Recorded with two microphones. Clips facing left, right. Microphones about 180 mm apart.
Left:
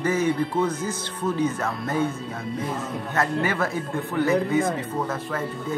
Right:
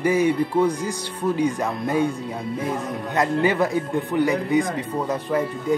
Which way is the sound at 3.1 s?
15° right (ahead or behind).